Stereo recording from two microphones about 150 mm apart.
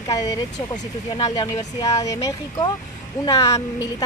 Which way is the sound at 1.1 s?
25° left (ahead or behind).